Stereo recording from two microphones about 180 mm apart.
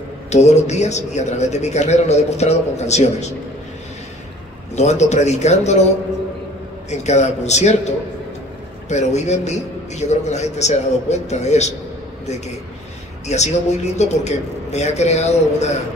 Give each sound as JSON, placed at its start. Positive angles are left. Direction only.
{"t": 0.3, "sound": "a man's voice", "side_deg": 40}
{"t": 4.7, "sound": "a man's voice", "side_deg": 40}
{"t": 6.9, "sound": "a man's voice", "side_deg": 40}
{"t": 8.8, "sound": "a man's voice", "side_deg": 40}
{"t": 13.3, "sound": "a man's voice", "side_deg": 40}